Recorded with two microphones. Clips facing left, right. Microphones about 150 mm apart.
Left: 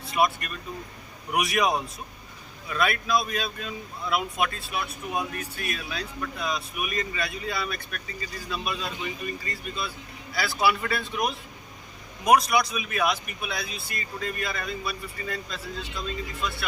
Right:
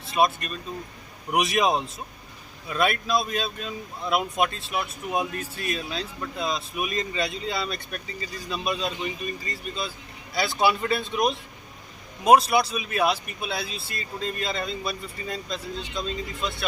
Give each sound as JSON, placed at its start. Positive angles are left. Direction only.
{"t": 0.0, "sound": "speech", "side_deg": -25}